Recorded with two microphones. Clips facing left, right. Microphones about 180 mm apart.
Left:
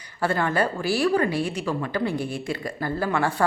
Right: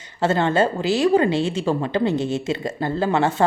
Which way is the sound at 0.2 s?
25° right (ahead or behind).